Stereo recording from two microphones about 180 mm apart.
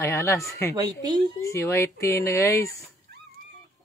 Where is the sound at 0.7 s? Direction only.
20° right (ahead or behind).